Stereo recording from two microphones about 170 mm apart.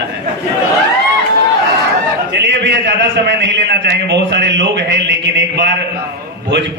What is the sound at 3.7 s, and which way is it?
Speech, 85° right.